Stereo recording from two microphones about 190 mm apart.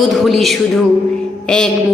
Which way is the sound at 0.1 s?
Centre (ahead or behind).